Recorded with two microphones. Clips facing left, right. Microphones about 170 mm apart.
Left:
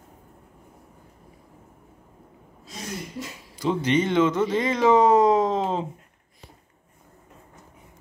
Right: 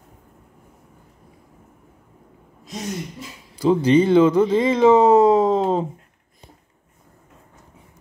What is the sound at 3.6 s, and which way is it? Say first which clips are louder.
Speech: right 7 dB; 35° right (ahead or behind).